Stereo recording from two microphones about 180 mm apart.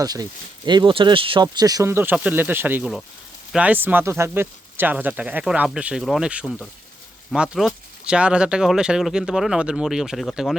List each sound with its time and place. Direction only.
0.0 s speech: 20° right (ahead or behind); by 10.5 s centre (ahead or behind)